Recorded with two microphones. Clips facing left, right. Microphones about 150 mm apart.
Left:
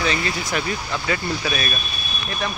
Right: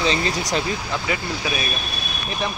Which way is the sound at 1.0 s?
15° right (ahead or behind).